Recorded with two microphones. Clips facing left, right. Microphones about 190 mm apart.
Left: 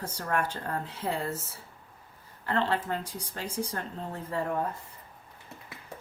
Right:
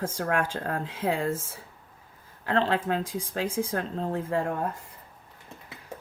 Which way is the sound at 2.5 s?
90° right.